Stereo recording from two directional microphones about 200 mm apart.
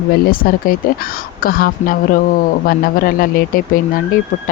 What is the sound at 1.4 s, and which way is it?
Speech, 45° left (ahead or behind).